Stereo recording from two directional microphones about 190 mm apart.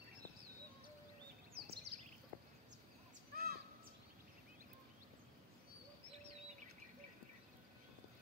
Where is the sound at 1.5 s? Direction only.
55° right (ahead or behind).